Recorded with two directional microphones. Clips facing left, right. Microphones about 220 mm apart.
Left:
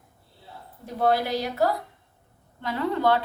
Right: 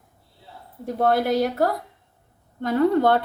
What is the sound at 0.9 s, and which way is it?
A woman's voice, 50° right (ahead or behind).